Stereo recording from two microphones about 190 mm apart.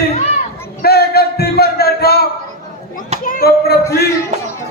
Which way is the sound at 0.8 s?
55° left (ahead or behind).